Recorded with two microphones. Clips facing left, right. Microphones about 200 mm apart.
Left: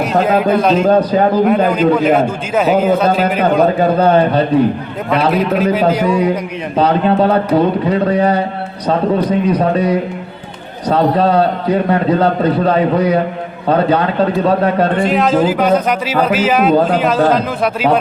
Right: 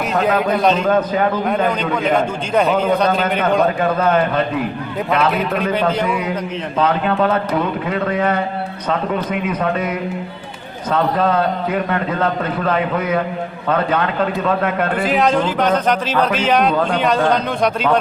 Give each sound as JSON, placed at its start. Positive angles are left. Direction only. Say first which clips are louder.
{"t": 0.1, "sound": "a man's voice", "louder": "left 3 dB", "side_deg": 0}
{"t": 0.8, "sound": "a man's voice", "louder": "left 5 dB", "side_deg": 35}
{"t": 1.5, "sound": "a man's voice", "louder": "left 7 dB", "side_deg": 5}
{"t": 3.8, "sound": "a man's voice", "louder": "left 5 dB", "side_deg": 35}
{"t": 5.3, "sound": "a man's voice", "louder": "left 5 dB", "side_deg": 0}
{"t": 6.7, "sound": "a man's voice", "louder": "left 5 dB", "side_deg": 35}
{"t": 14.9, "sound": "a man's voice", "louder": "left 3 dB", "side_deg": 0}